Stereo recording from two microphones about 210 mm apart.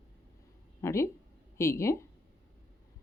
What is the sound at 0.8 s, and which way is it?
A woman's voice, 15° left (ahead or behind).